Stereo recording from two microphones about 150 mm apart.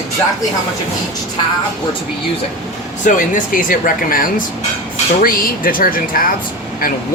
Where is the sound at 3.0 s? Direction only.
60° left (ahead or behind).